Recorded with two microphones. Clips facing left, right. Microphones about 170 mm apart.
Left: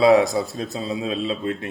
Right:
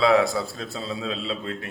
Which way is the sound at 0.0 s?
20° left (ahead or behind).